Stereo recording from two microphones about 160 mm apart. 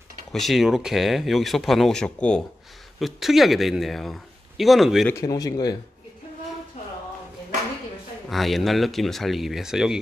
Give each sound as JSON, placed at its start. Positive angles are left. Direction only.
{"t": 0.3, "sound": "speech", "side_deg": 0}
{"t": 5.0, "sound": "speech", "side_deg": 20}
{"t": 8.3, "sound": "speech", "side_deg": 0}